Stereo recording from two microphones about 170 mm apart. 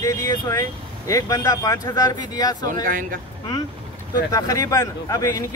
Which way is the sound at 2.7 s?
55° right (ahead or behind).